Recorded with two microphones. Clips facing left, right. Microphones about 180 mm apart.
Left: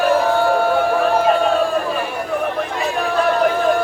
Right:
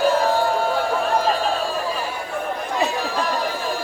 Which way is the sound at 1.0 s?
60° left (ahead or behind).